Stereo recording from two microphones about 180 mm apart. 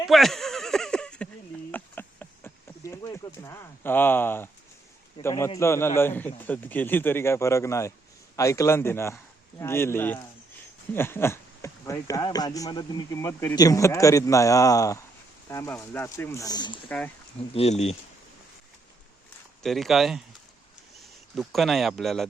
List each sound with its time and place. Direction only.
0.1 s bleat: centre (ahead or behind)
1.7 s a sound: 10° left (ahead or behind)
5.2 s speech: 15° left (ahead or behind)
17.5 s speech: 35° left (ahead or behind)
19.6 s speech: centre (ahead or behind)